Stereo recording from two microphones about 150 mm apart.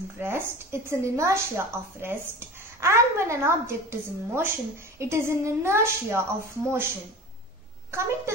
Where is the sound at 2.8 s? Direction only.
20° right (ahead or behind).